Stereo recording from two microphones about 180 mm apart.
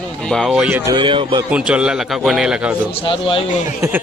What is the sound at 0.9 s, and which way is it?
Speech, 25° right (ahead or behind).